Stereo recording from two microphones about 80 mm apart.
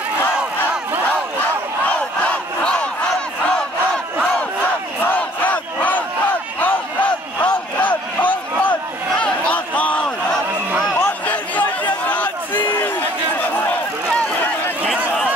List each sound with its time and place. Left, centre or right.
1.9 s crowd: centre
5.0 s crowd: left
7.4 s crowd: left
9.2 s a sound: centre
12.1 s crowd: left